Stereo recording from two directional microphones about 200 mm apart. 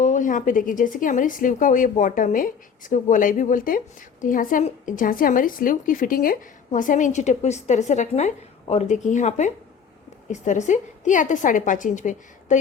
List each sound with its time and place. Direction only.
0.0 s a woman's voice: 40° left (ahead or behind)